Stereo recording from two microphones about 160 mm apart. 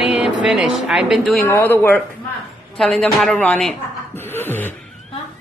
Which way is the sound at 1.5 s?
15° left (ahead or behind).